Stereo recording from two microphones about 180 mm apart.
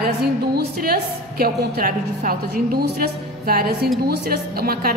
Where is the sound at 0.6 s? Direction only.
60° right (ahead or behind).